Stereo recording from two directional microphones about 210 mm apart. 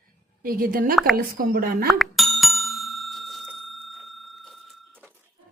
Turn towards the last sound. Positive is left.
turn(degrees=0)  # may be behind; listen again after turning